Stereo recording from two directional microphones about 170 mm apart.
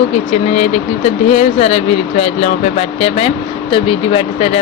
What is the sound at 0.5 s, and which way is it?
Speech, 40° left (ahead or behind).